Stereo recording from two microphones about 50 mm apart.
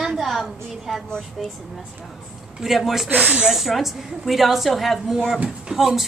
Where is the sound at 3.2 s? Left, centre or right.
Right.